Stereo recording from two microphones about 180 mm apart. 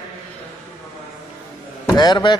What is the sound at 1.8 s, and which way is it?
Speech, 25° left (ahead or behind).